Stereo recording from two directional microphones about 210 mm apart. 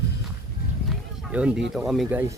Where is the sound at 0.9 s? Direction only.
5° right (ahead or behind).